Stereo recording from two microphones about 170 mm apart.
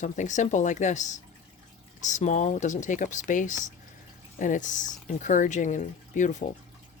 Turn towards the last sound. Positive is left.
turn(degrees=45)  # may be behind; listen again after turning